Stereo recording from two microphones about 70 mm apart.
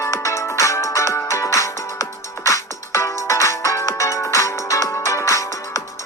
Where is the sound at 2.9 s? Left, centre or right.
Left.